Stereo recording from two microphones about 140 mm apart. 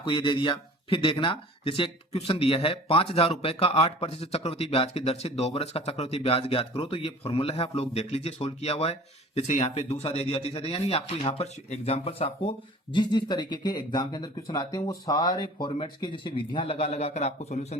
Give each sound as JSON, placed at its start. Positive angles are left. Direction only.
{"t": 0.0, "sound": "speech", "side_deg": 35}
{"t": 12.9, "sound": "speech", "side_deg": 30}